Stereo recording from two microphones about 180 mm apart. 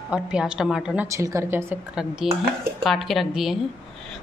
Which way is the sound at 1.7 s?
5° right (ahead or behind).